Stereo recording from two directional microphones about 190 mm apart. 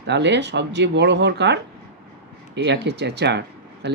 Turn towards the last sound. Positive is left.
turn(degrees=-60)  # may be behind; listen again after turning